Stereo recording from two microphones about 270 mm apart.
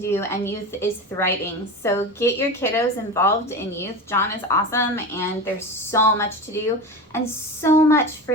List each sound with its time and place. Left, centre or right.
0.0 s a woman's voice: centre
7.6 s a woman's voice: centre